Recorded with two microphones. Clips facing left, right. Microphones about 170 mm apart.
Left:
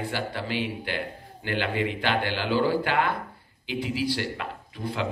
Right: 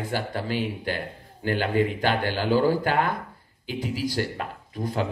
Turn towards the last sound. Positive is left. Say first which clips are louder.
# right 3 dB
turn(degrees=-45)  # may be behind; listen again after turning